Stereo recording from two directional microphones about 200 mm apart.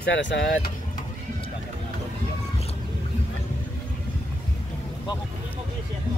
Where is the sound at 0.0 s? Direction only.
65° left (ahead or behind).